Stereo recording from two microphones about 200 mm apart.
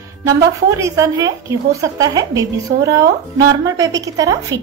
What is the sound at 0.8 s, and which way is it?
A woman's voice, 15° right (ahead or behind).